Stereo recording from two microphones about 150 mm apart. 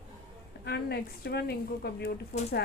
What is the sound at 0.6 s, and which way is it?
Speech, 90° left.